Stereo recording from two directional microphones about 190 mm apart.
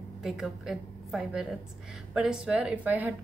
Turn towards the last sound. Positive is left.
turn(degrees=-10)  # may be behind; listen again after turning